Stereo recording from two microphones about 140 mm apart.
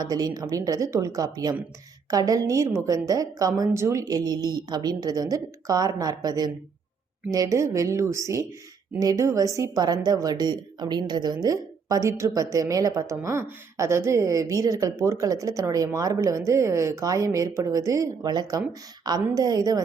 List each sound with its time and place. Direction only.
0.0 s a woman's voice: 25° right (ahead or behind)